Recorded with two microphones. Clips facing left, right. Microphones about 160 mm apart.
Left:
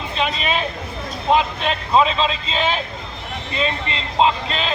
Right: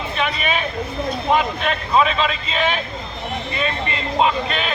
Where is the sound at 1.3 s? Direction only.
25° left (ahead or behind).